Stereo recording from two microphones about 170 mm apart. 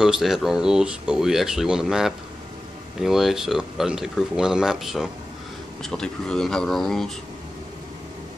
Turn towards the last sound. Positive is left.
turn(degrees=0)  # may be behind; listen again after turning